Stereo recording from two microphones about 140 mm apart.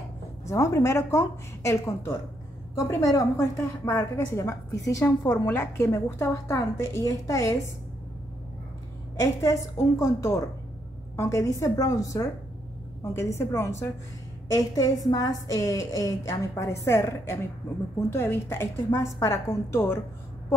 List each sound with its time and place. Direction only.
0.5 s a woman's voice: 20° left (ahead or behind)
9.2 s a woman's voice: 25° left (ahead or behind)